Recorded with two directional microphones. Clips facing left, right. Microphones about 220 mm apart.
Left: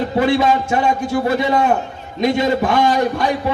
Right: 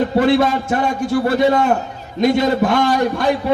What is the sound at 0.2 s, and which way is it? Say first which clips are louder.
A man's voice: even; 50° right (ahead or behind).